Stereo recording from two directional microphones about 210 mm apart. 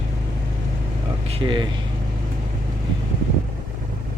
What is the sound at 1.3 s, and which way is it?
Speech, 25° right (ahead or behind).